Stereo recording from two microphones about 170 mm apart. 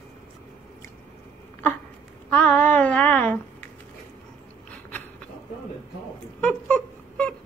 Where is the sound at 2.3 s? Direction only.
10° left (ahead or behind).